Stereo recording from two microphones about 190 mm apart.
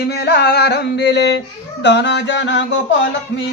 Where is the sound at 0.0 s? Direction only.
55° left (ahead or behind).